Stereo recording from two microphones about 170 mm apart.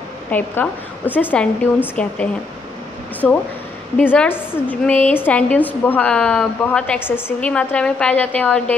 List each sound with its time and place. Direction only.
0.3 s a woman's voice: 10° left (ahead or behind)